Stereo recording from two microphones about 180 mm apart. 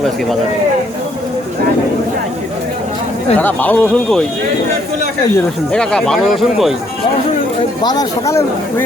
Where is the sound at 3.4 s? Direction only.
10° left (ahead or behind).